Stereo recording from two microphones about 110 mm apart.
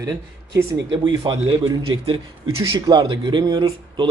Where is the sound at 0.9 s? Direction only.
50° right (ahead or behind).